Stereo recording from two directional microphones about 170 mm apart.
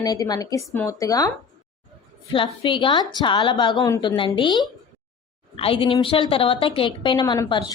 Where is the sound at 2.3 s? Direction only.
30° left (ahead or behind).